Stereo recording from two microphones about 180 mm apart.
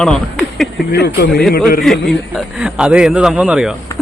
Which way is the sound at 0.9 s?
65° left (ahead or behind).